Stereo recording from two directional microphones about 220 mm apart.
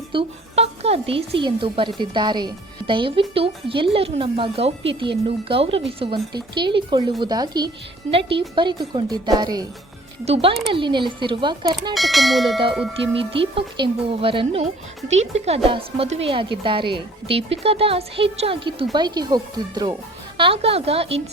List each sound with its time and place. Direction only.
0.1 s a woman's voice: 25° right (ahead or behind)
11.9 s speech: centre (ahead or behind)
13.0 s a woman's voice: 25° right (ahead or behind)